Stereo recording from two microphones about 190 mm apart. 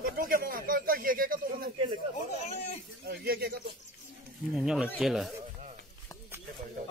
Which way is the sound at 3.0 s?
50° right (ahead or behind).